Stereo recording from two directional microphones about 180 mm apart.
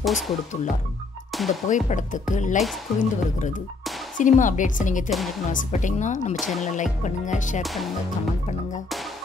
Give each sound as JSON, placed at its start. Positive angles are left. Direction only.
{"t": 0.0, "sound": "speech", "side_deg": 0}
{"t": 1.7, "sound": "music", "side_deg": 45}
{"t": 7.6, "sound": "speech", "side_deg": 0}